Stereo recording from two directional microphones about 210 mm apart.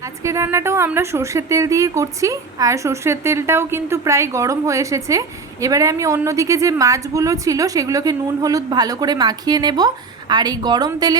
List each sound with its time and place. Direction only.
0.2 s a woman's voice: 15° right (ahead or behind)